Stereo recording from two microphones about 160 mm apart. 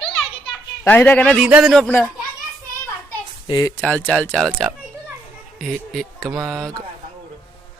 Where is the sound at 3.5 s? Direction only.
20° left (ahead or behind).